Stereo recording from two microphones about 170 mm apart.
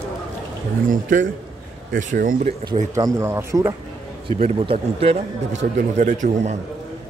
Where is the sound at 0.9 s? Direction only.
50° right (ahead or behind).